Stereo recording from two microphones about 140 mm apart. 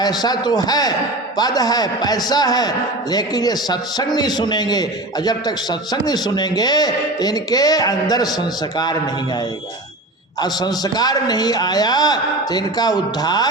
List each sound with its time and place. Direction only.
0.0 s a man's voice: 30° left (ahead or behind)
10.4 s a man's voice: 30° left (ahead or behind)